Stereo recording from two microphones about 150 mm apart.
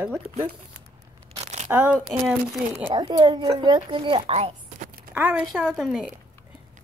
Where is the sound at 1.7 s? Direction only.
10° right (ahead or behind).